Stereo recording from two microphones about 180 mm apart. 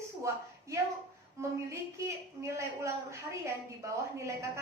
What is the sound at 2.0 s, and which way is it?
A woman's voice, 15° right (ahead or behind).